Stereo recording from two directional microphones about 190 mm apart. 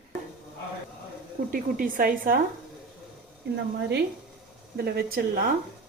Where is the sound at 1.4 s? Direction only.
45° right (ahead or behind).